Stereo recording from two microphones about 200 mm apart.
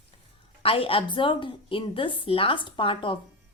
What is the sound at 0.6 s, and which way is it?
A woman's voice, 25° left (ahead or behind).